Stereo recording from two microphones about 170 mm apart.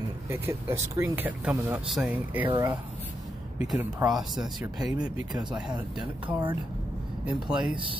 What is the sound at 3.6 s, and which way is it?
Speech, 5° right (ahead or behind).